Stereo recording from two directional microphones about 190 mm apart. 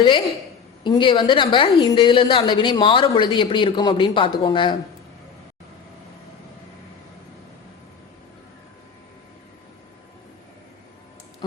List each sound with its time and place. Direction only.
0.9 s a woman's voice: 25° left (ahead or behind)